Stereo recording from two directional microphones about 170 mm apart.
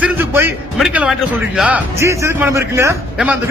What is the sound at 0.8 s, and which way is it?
A man's voice, 5° right (ahead or behind).